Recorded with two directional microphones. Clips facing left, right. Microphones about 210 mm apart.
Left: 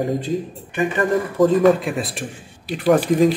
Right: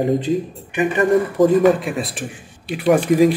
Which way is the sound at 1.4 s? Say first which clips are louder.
Left 1 dB; centre (ahead or behind).